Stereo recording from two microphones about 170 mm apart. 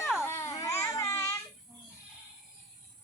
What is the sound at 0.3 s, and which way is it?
Baby cry, 15° left (ahead or behind).